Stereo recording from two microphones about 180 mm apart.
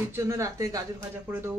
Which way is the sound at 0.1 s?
15° right (ahead or behind).